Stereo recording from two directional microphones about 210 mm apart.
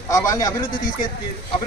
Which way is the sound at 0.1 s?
15° left (ahead or behind).